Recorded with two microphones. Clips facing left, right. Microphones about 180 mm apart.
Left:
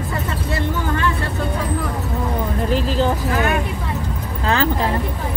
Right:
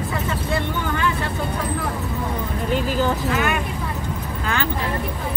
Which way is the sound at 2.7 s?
30° left (ahead or behind).